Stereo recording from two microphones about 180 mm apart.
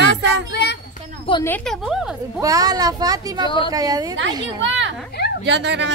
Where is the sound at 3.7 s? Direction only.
20° right (ahead or behind).